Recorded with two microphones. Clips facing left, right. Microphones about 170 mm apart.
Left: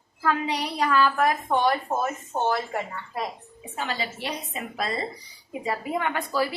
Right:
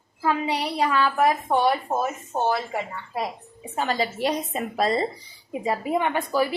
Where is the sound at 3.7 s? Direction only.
40° right (ahead or behind).